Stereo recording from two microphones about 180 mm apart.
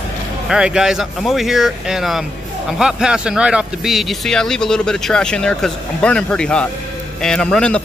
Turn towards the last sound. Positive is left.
turn(degrees=5)  # may be behind; listen again after turning